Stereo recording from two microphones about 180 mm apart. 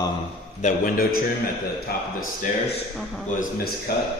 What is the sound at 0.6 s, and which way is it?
Speech, 50° left (ahead or behind).